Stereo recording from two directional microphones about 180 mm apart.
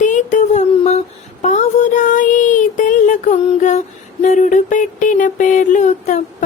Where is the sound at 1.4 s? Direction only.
40° left (ahead or behind).